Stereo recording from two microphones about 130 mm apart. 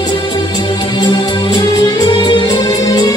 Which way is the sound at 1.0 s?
35° left (ahead or behind).